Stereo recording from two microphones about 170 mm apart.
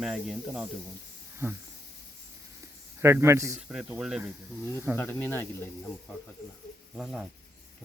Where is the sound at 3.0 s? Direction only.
15° right (ahead or behind).